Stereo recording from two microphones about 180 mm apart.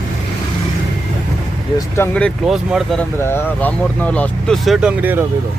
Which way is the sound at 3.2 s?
15° left (ahead or behind).